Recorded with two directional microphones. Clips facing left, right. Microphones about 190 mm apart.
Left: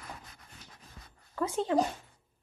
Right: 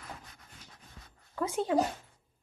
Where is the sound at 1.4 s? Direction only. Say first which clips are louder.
Even; 15° right (ahead or behind).